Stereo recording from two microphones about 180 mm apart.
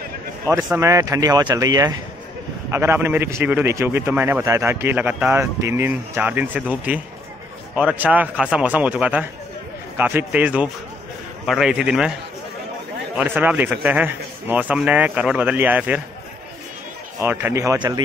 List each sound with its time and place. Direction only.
0.7 s a man's voice: 15° right (ahead or behind)
17.2 s speech: 10° right (ahead or behind)